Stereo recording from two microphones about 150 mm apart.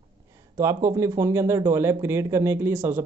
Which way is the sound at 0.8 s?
20° right (ahead or behind).